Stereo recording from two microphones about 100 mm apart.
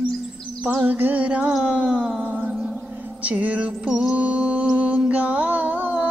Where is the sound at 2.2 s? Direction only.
15° right (ahead or behind).